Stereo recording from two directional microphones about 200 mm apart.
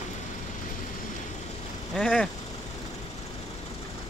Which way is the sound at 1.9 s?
5° left (ahead or behind).